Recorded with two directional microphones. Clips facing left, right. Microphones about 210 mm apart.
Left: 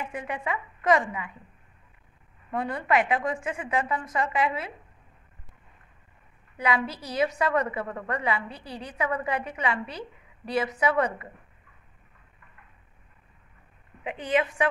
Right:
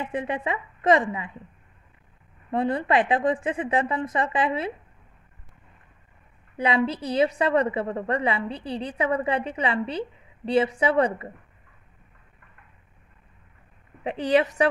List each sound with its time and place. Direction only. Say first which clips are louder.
0.0 s a woman's voice: right 5 dB; 25° right (ahead or behind)
2.5 s a woman's voice: right 3 dB; 25° right (ahead or behind)
6.5 s a woman's voice: right 4 dB; 30° right (ahead or behind)
14.0 s a woman's voice: right 5 dB; 40° right (ahead or behind)